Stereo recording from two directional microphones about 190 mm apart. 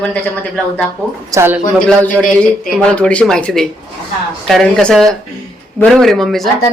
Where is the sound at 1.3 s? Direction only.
10° right (ahead or behind).